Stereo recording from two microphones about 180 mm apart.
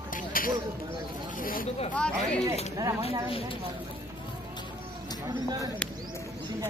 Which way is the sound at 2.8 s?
15° right (ahead or behind).